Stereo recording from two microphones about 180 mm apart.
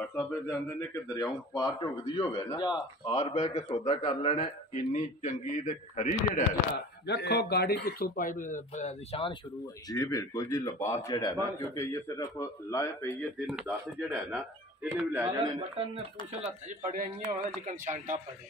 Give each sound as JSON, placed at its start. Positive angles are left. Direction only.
{"t": 0.1, "sound": "speech", "side_deg": 10}
{"t": 3.8, "sound": "a man's voice", "side_deg": 40}
{"t": 4.9, "sound": "speech", "side_deg": 45}
{"t": 7.1, "sound": "speech", "side_deg": 65}
{"t": 9.8, "sound": "a man's voice", "side_deg": 20}
{"t": 13.5, "sound": "speech", "side_deg": -5}
{"t": 16.6, "sound": "a man's voice", "side_deg": -45}